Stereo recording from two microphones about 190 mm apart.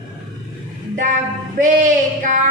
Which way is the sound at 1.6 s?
40° right (ahead or behind).